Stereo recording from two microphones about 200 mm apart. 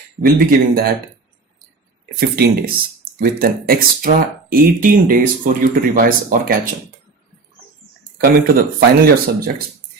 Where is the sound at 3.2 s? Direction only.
45° right (ahead or behind).